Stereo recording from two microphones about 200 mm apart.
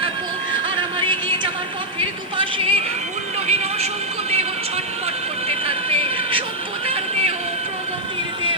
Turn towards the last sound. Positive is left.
turn(degrees=-30)  # may be behind; listen again after turning